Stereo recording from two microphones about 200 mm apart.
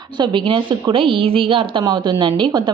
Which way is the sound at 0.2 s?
25° right (ahead or behind).